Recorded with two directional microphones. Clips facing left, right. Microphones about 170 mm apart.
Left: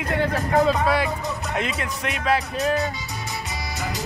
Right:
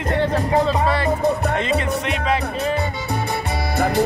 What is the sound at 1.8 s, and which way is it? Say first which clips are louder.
Music: right 5 dB; 5° left (ahead or behind).